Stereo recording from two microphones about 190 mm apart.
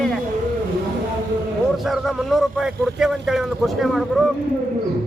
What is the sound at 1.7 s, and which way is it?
Speech, centre (ahead or behind).